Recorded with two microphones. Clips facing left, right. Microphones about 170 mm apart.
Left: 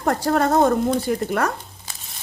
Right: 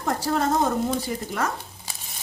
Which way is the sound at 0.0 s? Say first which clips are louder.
Left 4 dB; 60° left (ahead or behind).